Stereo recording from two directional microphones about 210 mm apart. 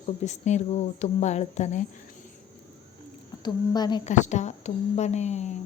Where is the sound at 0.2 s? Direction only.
35° left (ahead or behind).